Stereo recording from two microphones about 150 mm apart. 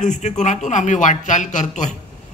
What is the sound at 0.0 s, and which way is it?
A man's voice, 55° left (ahead or behind).